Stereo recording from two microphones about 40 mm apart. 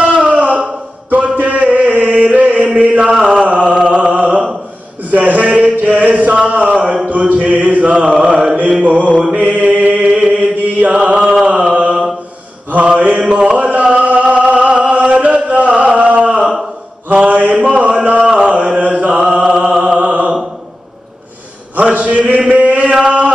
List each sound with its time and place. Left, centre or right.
0.0 s a sound: right
1.1 s chant: right
3.4 s a sound: right
7.1 s mantra: right
10.0 s chant: right
11.4 s mantra: right
13.6 s chant: right
17.1 s mantra: right
17.6 s a sound: right
18.4 s chant: right
19.3 s a sound: right
21.7 s chant: right
22.8 s chant: right